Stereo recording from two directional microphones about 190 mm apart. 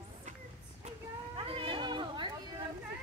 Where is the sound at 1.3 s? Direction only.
30° right (ahead or behind).